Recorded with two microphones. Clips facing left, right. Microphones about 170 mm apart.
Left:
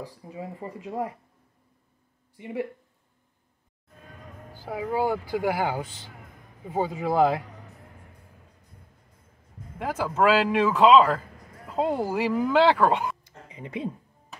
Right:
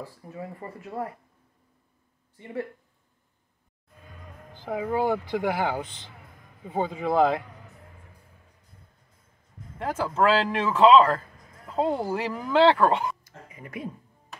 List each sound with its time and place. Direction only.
0.0 s speech: 15° left (ahead or behind)
2.3 s speech: 15° left (ahead or behind)
4.5 s a sound: 5° left (ahead or behind)
4.9 s speech: 10° left (ahead or behind)
9.8 s speech: 10° left (ahead or behind)
13.5 s speech: 25° left (ahead or behind)